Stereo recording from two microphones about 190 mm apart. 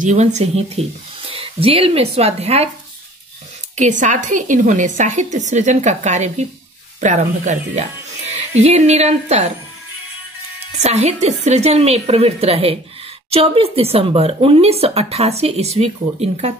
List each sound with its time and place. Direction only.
0.0 s speech: 40° right (ahead or behind)
3.7 s speech: 40° right (ahead or behind)
10.8 s speech: 35° right (ahead or behind)